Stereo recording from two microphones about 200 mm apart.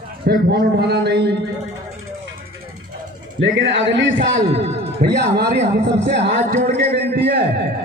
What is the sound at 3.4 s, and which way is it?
A man's voice, 65° right (ahead or behind).